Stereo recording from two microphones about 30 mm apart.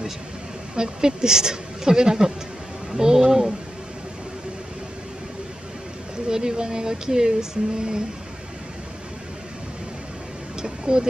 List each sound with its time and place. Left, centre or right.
0.7 s speech: right
6.2 s speech: right
10.6 s a sound: right